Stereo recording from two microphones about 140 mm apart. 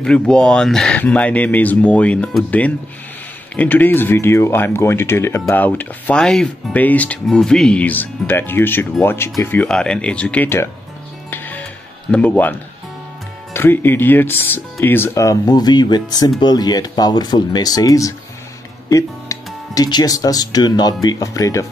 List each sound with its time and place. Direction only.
0.0 s speech: 5° left (ahead or behind)
11.2 s music: 15° left (ahead or behind)
12.1 s speech: 10° left (ahead or behind)